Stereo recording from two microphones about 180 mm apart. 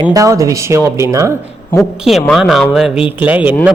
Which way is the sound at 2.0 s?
Centre (ahead or behind).